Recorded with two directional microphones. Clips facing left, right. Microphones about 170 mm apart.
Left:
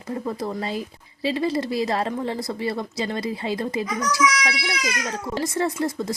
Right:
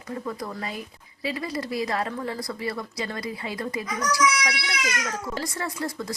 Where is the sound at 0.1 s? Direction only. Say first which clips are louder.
Left 5 dB; 30° left (ahead or behind).